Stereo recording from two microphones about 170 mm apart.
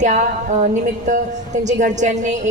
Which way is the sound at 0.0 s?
45° right (ahead or behind).